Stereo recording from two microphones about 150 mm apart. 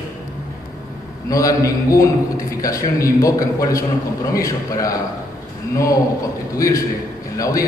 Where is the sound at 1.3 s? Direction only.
20° left (ahead or behind).